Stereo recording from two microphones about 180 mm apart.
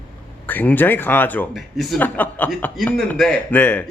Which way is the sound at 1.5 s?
Centre (ahead or behind).